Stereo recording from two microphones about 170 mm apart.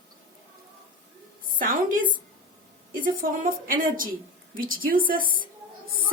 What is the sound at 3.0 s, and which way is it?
A woman's voice, 55° right (ahead or behind).